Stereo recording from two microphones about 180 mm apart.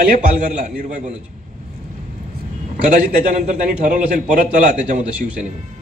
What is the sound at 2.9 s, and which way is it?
A man's voice, 45° right (ahead or behind).